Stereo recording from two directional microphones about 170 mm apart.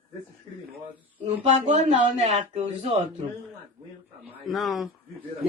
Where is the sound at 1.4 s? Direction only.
35° right (ahead or behind).